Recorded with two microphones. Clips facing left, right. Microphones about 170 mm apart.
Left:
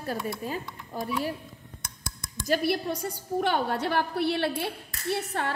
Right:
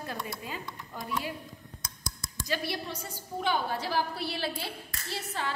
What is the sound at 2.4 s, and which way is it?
A woman's voice, 50° left (ahead or behind).